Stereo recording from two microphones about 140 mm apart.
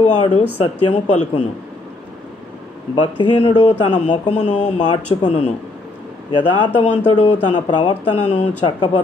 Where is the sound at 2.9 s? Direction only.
35° left (ahead or behind).